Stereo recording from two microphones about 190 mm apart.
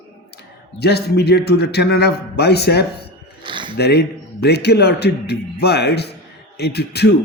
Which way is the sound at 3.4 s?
25° right (ahead or behind).